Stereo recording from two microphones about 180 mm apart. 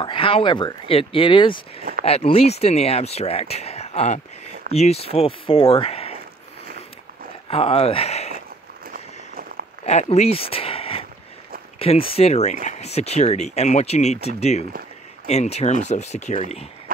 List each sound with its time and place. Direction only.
0.0 s speech: 30° left (ahead or behind)
7.4 s speech: 30° left (ahead or behind)
8.9 s a sound: 55° right (ahead or behind)
9.8 s speech: 40° left (ahead or behind)